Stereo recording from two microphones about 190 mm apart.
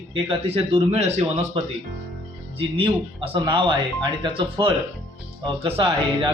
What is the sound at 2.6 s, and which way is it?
Speech, 30° right (ahead or behind).